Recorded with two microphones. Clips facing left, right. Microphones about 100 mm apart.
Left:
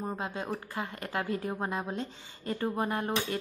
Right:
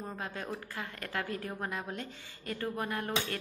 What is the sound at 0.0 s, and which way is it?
A woman's voice, 20° left (ahead or behind).